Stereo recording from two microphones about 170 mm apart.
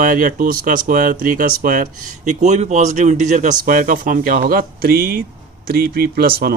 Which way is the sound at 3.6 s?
55° right (ahead or behind).